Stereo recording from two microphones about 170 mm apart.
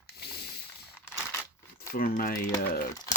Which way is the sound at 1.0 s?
15° left (ahead or behind).